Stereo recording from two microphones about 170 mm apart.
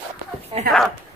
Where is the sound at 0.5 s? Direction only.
35° right (ahead or behind).